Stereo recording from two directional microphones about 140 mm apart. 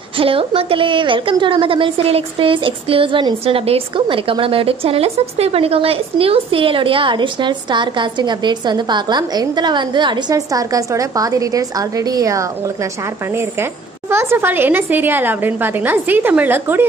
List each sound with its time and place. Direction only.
0.2 s a woman's voice: 40° right (ahead or behind); by 16.8 s 15° right (ahead or behind)